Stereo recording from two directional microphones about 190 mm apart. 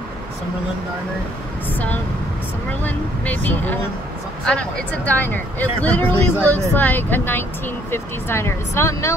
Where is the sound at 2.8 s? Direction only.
10° left (ahead or behind).